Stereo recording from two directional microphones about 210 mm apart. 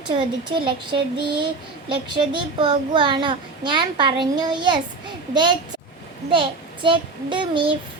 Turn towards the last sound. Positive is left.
turn(degrees=-25)  # may be behind; listen again after turning